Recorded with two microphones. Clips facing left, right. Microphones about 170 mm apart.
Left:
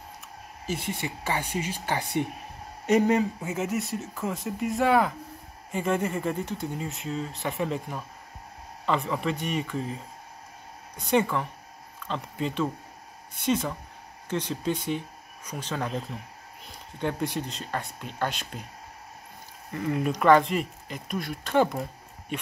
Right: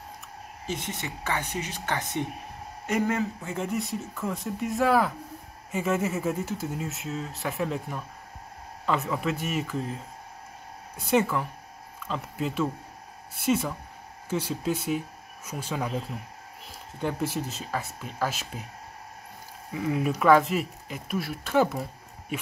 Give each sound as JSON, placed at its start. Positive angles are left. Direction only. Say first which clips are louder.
{"t": 0.7, "sound": "speech", "louder": "left 2 dB", "side_deg": 10}
{"t": 3.5, "sound": "speech", "louder": "even", "side_deg": 0}
{"t": 19.7, "sound": "speech", "louder": "even", "side_deg": -5}